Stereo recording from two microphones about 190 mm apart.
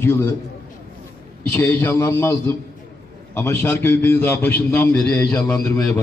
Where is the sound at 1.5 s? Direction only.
10° left (ahead or behind).